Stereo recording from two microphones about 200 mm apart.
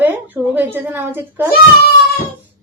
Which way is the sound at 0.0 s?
10° right (ahead or behind).